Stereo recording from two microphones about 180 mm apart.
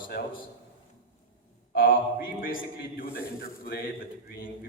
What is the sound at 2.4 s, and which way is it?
A man's voice, 50° left (ahead or behind).